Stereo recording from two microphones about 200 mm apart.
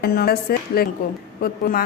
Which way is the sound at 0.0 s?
50° left (ahead or behind).